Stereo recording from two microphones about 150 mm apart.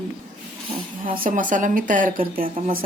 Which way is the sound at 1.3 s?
60° right (ahead or behind).